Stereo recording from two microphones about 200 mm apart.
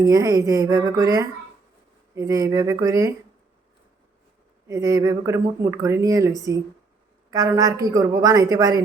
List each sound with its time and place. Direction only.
0.0 s speech: 15° right (ahead or behind)
4.7 s speech: 15° right (ahead or behind)